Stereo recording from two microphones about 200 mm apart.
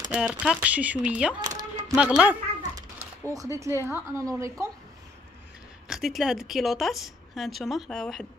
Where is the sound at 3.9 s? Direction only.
15° right (ahead or behind).